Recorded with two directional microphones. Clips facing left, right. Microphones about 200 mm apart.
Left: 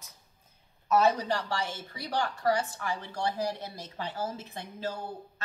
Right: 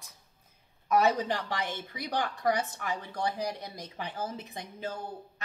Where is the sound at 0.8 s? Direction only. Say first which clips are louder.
Left 1 dB; 15° right (ahead or behind).